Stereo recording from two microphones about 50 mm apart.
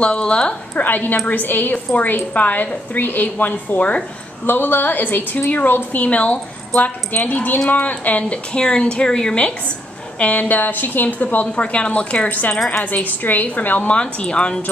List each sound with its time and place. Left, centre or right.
0.0 s a woman's voice: centre
0.8 s a woman's voice: left
10.1 s a woman's voice: left
11.4 s a woman's voice: left
13.9 s a woman's voice: centre